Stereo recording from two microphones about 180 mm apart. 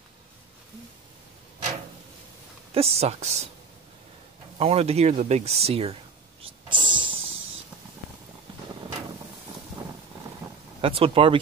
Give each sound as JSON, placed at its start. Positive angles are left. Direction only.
{"t": 2.7, "sound": "speech", "side_deg": -35}
{"t": 4.6, "sound": "speech", "side_deg": -35}
{"t": 6.7, "sound": "a sound", "side_deg": -25}
{"t": 10.8, "sound": "speech", "side_deg": -30}